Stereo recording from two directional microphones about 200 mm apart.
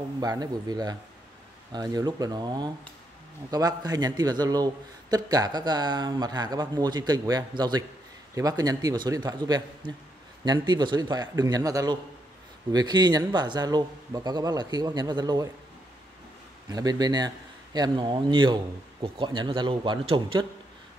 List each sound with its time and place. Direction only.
0.2 s a man's voice: 20° right (ahead or behind)
16.6 s speech: 20° right (ahead or behind)